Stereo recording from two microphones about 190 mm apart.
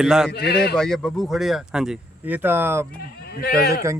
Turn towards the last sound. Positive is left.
turn(degrees=55)  # may be behind; listen again after turning